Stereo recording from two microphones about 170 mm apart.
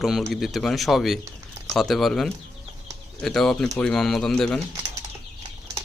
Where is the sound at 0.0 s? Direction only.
Centre (ahead or behind).